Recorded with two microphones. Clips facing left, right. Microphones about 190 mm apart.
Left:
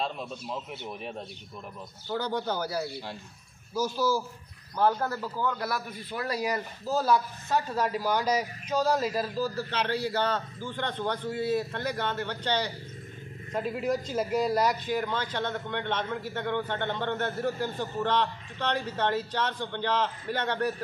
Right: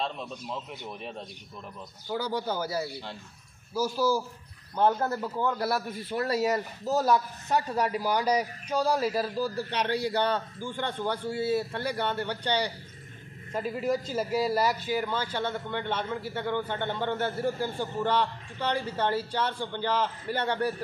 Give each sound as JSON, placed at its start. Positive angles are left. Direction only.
{"t": 0.0, "sound": "a man's voice", "side_deg": 5}
{"t": 2.0, "sound": "a man's voice", "side_deg": -10}
{"t": 4.7, "sound": "a man's voice", "side_deg": -20}
{"t": 13.5, "sound": "a man's voice", "side_deg": 0}